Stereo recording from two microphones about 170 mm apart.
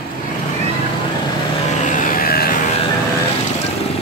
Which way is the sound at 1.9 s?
50° left (ahead or behind).